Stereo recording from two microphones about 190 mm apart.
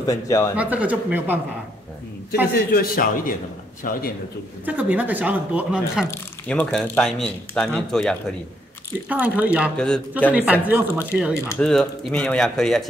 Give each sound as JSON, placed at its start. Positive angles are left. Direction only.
{"t": 0.0, "sound": "speech", "side_deg": 20}
{"t": 0.6, "sound": "speech", "side_deg": -5}
{"t": 2.5, "sound": "speech", "side_deg": 50}
{"t": 4.6, "sound": "speech", "side_deg": -10}
{"t": 6.0, "sound": "speech", "side_deg": 10}
{"t": 9.1, "sound": "speech", "side_deg": -10}
{"t": 9.8, "sound": "speech", "side_deg": 5}
{"t": 10.3, "sound": "speech", "side_deg": -5}
{"t": 11.6, "sound": "speech", "side_deg": 5}